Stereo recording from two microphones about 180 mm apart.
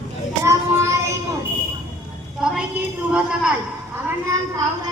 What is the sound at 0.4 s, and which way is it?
Child singing, 15° right (ahead or behind).